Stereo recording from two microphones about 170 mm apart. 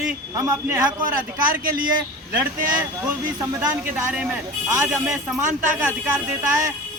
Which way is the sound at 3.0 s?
15° right (ahead or behind).